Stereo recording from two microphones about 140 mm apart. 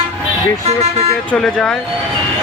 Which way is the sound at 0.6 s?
50° right (ahead or behind).